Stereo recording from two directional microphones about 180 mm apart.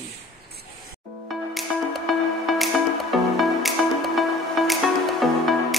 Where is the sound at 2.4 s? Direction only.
Centre (ahead or behind).